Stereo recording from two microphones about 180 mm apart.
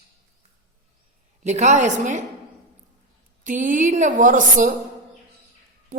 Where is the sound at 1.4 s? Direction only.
40° right (ahead or behind).